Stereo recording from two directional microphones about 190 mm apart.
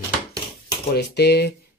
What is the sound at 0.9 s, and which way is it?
Speech, 60° left (ahead or behind).